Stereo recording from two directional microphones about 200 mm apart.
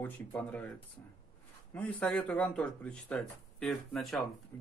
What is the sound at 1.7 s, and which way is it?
A man's voice, 5° left (ahead or behind).